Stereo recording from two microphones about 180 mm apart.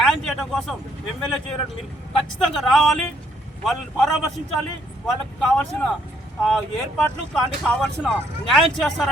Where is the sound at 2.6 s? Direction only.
Centre (ahead or behind).